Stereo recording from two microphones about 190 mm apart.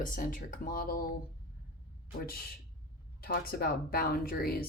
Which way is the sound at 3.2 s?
50° left (ahead or behind).